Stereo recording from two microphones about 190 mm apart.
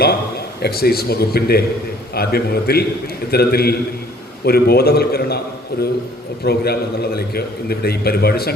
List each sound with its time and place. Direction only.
0.0 s a man's voice: 55° left (ahead or behind)